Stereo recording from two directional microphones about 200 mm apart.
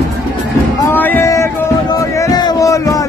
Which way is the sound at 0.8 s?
10° left (ahead or behind).